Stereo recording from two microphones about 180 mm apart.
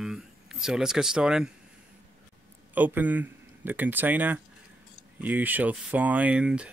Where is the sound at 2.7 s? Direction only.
10° right (ahead or behind).